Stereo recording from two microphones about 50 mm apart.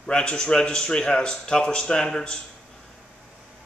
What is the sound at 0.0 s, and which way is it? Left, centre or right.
Speech, centre.